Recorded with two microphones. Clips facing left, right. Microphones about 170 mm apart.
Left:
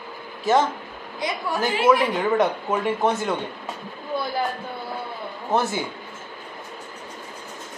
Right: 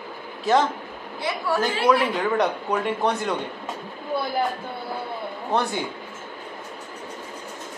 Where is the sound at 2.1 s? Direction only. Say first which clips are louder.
Left 2 dB; centre (ahead or behind).